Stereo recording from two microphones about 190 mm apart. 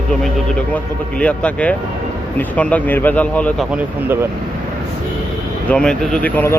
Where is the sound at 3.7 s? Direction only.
10° right (ahead or behind).